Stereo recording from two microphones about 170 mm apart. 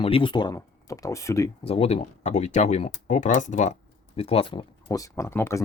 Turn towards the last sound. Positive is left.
turn(degrees=15)  # may be behind; listen again after turning